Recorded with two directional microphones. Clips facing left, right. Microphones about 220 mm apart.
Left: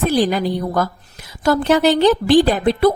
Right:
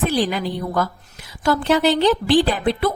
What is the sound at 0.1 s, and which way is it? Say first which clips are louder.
A woman's voice: left 4 dB; 45° left (ahead or behind).